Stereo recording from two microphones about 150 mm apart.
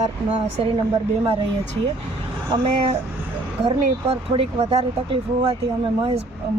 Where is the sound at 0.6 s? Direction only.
40° right (ahead or behind).